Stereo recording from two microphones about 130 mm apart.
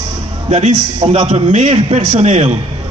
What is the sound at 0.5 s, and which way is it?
A man's voice, 60° right (ahead or behind).